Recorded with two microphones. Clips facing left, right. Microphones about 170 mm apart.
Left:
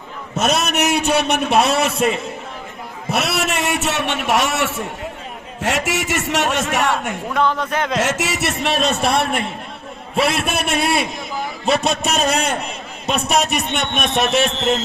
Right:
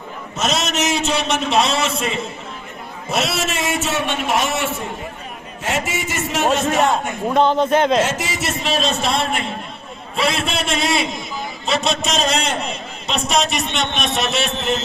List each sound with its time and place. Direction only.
0.3 s a man's voice: 60° left (ahead or behind); by 7.1 s 75° left (ahead or behind)
7.3 s a man's voice: 30° right (ahead or behind)
8.0 s a man's voice: 70° left (ahead or behind); by 14.5 s 50° left (ahead or behind)